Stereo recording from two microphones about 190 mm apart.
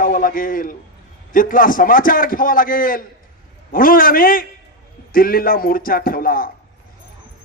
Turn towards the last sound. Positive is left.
turn(degrees=50)  # may be behind; listen again after turning